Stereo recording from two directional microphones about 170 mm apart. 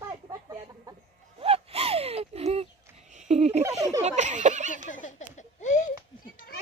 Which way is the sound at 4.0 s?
45° right (ahead or behind).